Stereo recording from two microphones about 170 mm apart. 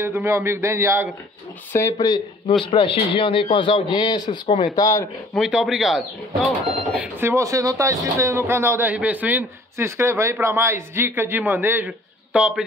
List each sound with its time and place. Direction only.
0.0 s speech: 15° right (ahead or behind)
1.7 s speech: 15° left (ahead or behind)
2.6 s a man's voice: 30° left (ahead or behind)
5.3 s speech: 5° right (ahead or behind)